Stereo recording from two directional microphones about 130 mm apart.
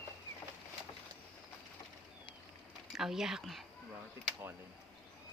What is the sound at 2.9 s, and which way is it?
Speech, 5° right (ahead or behind).